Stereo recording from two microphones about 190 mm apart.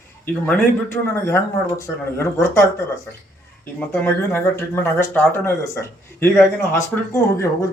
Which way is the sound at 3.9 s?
10° left (ahead or behind).